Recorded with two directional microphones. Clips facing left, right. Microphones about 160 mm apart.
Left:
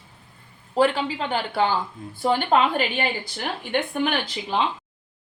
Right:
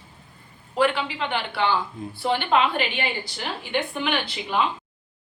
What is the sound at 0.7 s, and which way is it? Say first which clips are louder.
A woman's voice: left 2 dB; 40° left (ahead or behind).